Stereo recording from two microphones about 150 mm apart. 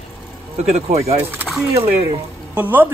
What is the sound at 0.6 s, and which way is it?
Speech, 45° right (ahead or behind).